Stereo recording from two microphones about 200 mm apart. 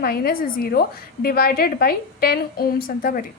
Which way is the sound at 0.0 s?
50° left (ahead or behind).